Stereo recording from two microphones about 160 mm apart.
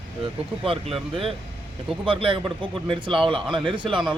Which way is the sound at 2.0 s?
35° right (ahead or behind).